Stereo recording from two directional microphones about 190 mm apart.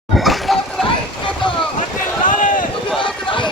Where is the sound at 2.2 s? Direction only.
45° left (ahead or behind).